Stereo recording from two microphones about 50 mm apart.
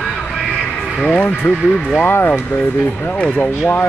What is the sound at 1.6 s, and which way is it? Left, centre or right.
Speech, centre.